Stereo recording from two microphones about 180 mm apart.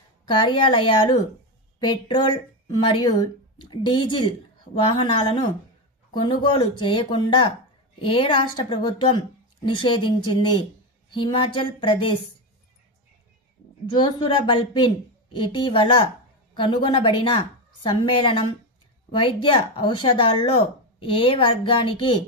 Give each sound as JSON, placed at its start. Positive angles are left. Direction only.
{"t": 0.2, "sound": "speech", "side_deg": 25}
{"t": 13.9, "sound": "speech", "side_deg": 25}